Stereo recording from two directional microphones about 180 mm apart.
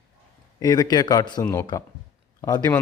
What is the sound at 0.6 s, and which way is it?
Speech, 20° left (ahead or behind).